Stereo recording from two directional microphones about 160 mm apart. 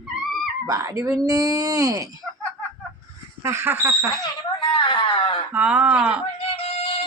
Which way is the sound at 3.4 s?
15° right (ahead or behind).